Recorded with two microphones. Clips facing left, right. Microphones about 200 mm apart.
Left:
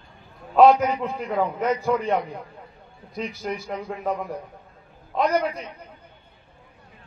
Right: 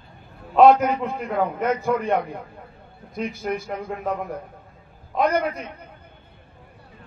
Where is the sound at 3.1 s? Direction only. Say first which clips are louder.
Right 3 dB; 55° right (ahead or behind).